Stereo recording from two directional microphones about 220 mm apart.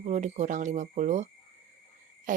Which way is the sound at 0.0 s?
30° right (ahead or behind).